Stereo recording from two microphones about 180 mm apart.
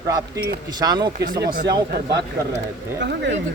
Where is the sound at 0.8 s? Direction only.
20° right (ahead or behind).